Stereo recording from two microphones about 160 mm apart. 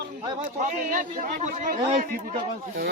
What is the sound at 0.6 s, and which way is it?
A man's voice, 55° right (ahead or behind).